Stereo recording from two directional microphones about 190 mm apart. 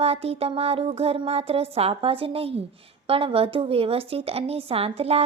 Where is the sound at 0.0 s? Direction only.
30° right (ahead or behind).